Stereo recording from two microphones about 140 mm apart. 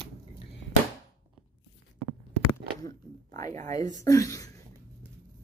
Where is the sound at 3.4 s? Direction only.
25° left (ahead or behind).